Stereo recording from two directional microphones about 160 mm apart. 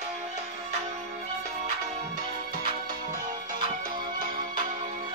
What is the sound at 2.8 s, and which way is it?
Music, 55° right (ahead or behind).